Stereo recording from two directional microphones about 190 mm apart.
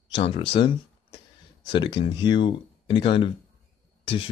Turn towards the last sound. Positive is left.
turn(degrees=30)  # may be behind; listen again after turning